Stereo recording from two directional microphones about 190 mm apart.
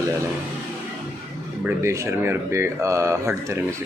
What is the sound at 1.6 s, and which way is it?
Speech, 10° right (ahead or behind).